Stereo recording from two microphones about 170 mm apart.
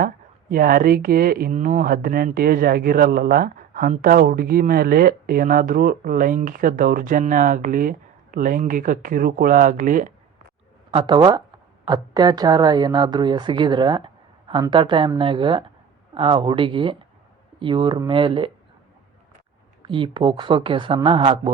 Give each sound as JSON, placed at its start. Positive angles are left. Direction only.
{"t": 0.5, "sound": "speech", "side_deg": -55}
{"t": 10.9, "sound": "speech", "side_deg": -25}
{"t": 19.8, "sound": "speech", "side_deg": -30}